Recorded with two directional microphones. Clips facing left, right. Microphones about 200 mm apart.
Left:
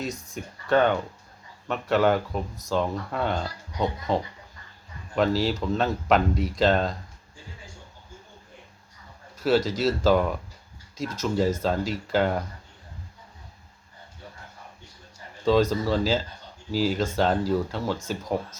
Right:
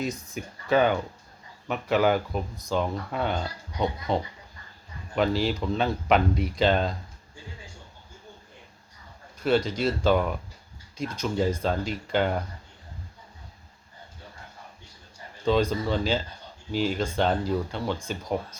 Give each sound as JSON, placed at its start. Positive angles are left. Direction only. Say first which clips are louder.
{"t": 0.3, "sound": "speech", "louder": "left 1 dB", "side_deg": -5}
{"t": 9.4, "sound": "speech", "louder": "left 1 dB", "side_deg": 5}
{"t": 15.4, "sound": "speech", "louder": "left 2 dB", "side_deg": 0}